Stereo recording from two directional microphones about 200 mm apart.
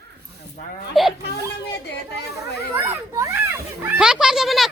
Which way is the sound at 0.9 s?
Centre (ahead or behind).